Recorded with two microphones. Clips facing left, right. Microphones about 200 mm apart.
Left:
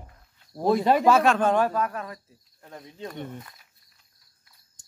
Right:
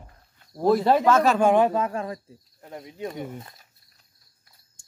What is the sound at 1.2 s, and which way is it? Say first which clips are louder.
Speech: right 2 dB; 5° right (ahead or behind).